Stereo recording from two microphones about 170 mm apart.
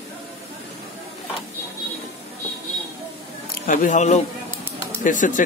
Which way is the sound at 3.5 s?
50° left (ahead or behind).